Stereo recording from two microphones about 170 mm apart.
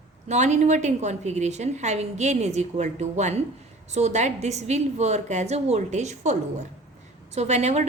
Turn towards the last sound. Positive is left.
turn(degrees=-40)  # may be behind; listen again after turning